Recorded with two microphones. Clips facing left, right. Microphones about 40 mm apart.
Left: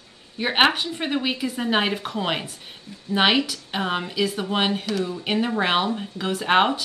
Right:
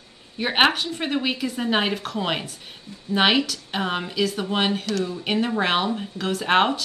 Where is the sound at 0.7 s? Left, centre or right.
Centre.